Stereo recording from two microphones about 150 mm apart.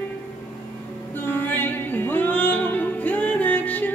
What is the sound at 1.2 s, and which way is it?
Music, 15° left (ahead or behind).